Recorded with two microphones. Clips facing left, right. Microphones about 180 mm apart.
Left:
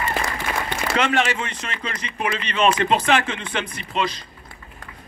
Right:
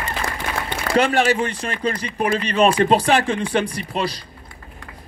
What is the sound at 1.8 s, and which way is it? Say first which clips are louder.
Speech: right 6 dB; 40° right (ahead or behind).